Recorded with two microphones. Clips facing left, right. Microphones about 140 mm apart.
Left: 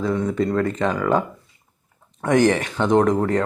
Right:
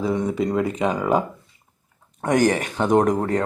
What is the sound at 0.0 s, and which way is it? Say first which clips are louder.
Speech: left 1 dB; 15° right (ahead or behind).